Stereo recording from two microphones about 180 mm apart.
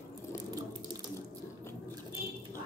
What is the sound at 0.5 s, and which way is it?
Water tap, 20° right (ahead or behind).